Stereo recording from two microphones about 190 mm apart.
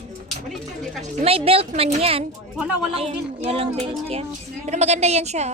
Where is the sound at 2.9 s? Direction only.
30° right (ahead or behind).